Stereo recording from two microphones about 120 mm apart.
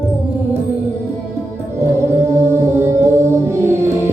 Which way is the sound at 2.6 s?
25° right (ahead or behind).